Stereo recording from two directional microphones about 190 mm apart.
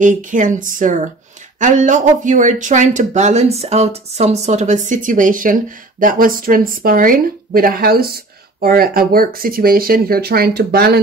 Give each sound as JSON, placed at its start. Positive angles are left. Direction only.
{"t": 0.0, "sound": "speech", "side_deg": -40}